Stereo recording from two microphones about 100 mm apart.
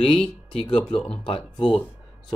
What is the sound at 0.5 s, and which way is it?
Speech, 65° left (ahead or behind).